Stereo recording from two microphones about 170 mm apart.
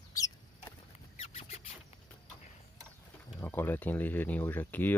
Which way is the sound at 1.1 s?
35° left (ahead or behind).